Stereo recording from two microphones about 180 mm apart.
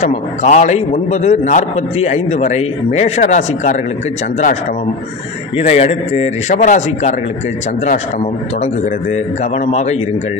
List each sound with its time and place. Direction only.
0.1 s a man's voice: 40° left (ahead or behind)
5.6 s a man's voice: 35° left (ahead or behind)
9.1 s a man's voice: 40° left (ahead or behind)